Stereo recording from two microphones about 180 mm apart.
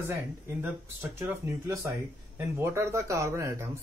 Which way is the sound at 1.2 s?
10° right (ahead or behind).